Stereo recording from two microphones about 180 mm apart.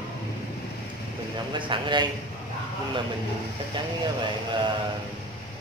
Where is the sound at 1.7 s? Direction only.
25° right (ahead or behind).